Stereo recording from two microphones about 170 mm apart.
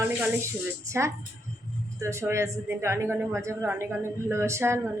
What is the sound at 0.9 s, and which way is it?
A woman's voice, 15° right (ahead or behind).